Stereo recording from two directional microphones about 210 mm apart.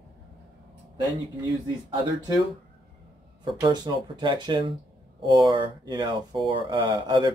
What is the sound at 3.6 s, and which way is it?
Speech, 20° right (ahead or behind).